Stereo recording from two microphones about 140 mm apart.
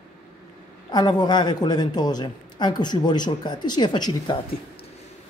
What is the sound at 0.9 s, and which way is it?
Speech, 30° left (ahead or behind).